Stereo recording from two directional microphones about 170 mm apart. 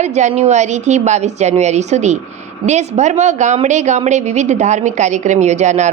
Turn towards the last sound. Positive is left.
turn(degrees=-45)  # may be behind; listen again after turning